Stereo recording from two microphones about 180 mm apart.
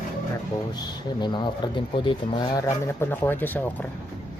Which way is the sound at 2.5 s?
15° left (ahead or behind).